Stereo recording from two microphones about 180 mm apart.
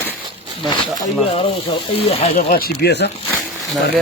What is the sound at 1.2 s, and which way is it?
Speech, 30° left (ahead or behind).